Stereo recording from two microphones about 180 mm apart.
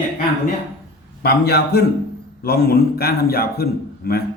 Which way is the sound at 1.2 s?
65° left (ahead or behind).